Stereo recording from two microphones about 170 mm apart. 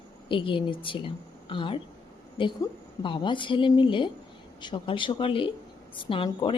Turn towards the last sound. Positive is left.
turn(degrees=30)  # may be behind; listen again after turning